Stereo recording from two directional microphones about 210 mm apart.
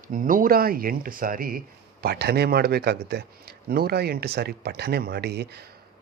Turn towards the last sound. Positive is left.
turn(degrees=-50)  # may be behind; listen again after turning